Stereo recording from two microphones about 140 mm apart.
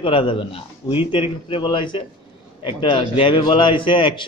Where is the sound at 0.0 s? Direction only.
40° left (ahead or behind).